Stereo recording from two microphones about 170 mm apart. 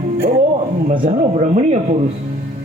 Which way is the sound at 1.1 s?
45° right (ahead or behind).